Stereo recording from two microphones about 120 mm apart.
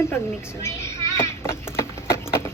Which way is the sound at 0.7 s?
25° left (ahead or behind).